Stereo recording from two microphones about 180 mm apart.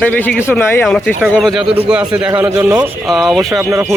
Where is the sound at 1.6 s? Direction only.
30° right (ahead or behind).